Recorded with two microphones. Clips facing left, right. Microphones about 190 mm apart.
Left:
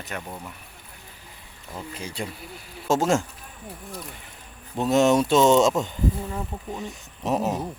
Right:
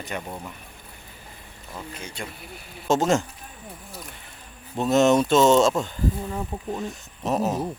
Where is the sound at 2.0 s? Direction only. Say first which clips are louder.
Left 6 dB; 30° left (ahead or behind).